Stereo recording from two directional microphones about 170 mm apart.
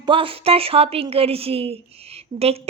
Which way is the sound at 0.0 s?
30° right (ahead or behind).